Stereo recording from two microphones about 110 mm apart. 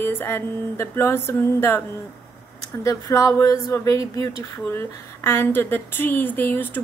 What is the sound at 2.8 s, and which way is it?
A woman's voice, 30° left (ahead or behind).